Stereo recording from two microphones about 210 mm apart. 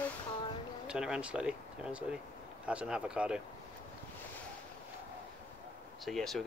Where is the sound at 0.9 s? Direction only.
5° right (ahead or behind).